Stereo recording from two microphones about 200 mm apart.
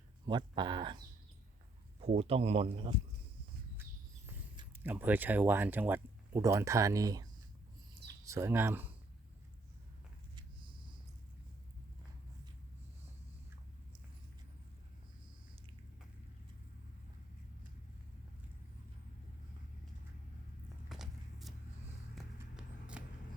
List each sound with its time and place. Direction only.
0.3 s speech: 20° right (ahead or behind)
2.0 s speech: 30° right (ahead or behind)
4.8 s speech: 10° right (ahead or behind)
8.3 s speech: 15° right (ahead or behind)
10.3 s a sound: 25° right (ahead or behind)
20.9 s walk: centre (ahead or behind)
22.1 s clip-clop: 5° right (ahead or behind)